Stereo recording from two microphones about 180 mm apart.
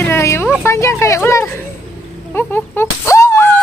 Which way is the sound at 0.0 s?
15° left (ahead or behind).